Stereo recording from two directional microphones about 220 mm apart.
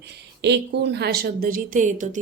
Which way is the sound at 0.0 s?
50° right (ahead or behind).